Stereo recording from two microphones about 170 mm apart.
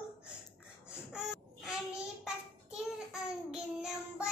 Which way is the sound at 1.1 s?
5° right (ahead or behind).